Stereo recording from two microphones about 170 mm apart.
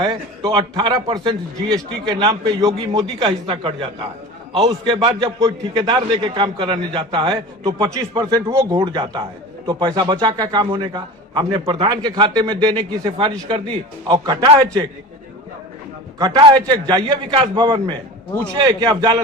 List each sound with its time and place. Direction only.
0.0 s a man's voice: 25° right (ahead or behind)
16.1 s a man's voice: 25° right (ahead or behind)